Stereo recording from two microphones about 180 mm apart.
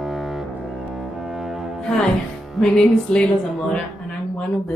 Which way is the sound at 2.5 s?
5° left (ahead or behind).